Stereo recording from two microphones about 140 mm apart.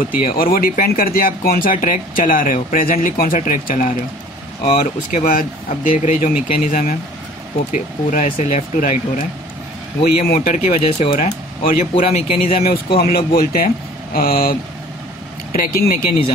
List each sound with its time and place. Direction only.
0.4 s speech: 90° left; by 3.9 s 65° left (ahead or behind)
4.7 s speech: 80° left
6.0 s speech: 75° left (ahead or behind)
7.7 s speech: 65° left (ahead or behind)
10.0 s speech: 90° left
10.4 s speech: 55° left (ahead or behind)
10.9 s speech: 45° left (ahead or behind)
11.1 s speech: 60° left (ahead or behind)
12.1 s speech: 45° left (ahead or behind)
12.6 s speech: 90° left